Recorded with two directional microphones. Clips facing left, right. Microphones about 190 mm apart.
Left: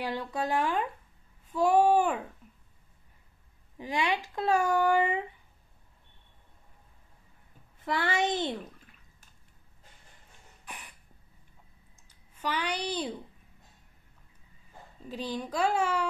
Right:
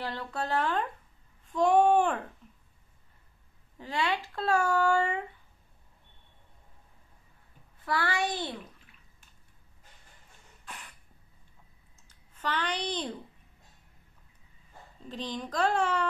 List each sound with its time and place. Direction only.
0.0 s speech: 15° left (ahead or behind)
3.7 s speech: 15° left (ahead or behind)
7.8 s a child's voice: 20° left (ahead or behind)
10.6 s cough: 15° left (ahead or behind)
12.1 s a child's voice: 10° left (ahead or behind)
15.0 s speech: 10° left (ahead or behind)